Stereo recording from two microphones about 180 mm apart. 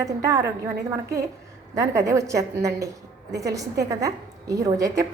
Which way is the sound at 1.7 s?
15° right (ahead or behind).